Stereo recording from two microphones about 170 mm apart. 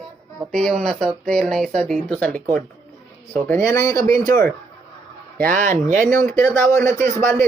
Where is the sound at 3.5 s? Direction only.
15° left (ahead or behind).